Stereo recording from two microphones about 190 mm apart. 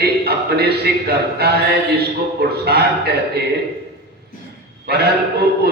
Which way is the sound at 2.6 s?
60° right (ahead or behind).